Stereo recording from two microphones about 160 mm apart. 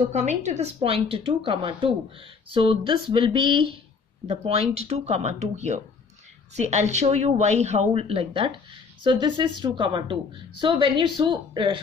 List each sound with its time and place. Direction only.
0.0 s a woman's voice: 45° right (ahead or behind); by 11.8 s 30° right (ahead or behind)